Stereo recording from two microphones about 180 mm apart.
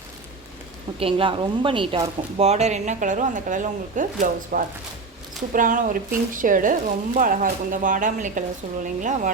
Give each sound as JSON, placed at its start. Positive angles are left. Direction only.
{"t": 0.9, "sound": "speech", "side_deg": -30}